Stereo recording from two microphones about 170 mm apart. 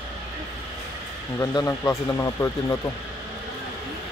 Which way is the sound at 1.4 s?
20° left (ahead or behind).